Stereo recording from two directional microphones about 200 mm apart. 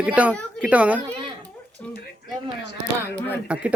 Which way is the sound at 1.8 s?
10° left (ahead or behind).